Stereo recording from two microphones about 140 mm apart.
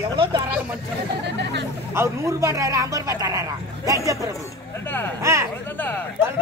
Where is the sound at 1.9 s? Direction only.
20° right (ahead or behind).